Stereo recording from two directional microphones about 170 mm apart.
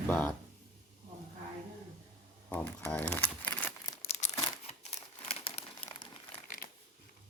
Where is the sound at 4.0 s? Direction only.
40° left (ahead or behind).